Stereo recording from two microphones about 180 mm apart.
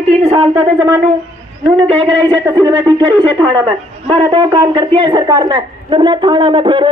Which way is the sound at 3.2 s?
25° right (ahead or behind).